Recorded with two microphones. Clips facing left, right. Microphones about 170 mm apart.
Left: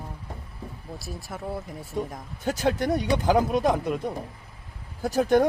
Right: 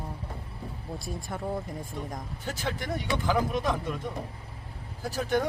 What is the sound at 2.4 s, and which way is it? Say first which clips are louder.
Speech: left 10 dB; 45° left (ahead or behind).